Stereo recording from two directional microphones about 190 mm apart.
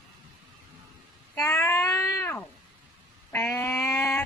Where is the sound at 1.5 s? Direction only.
15° left (ahead or behind).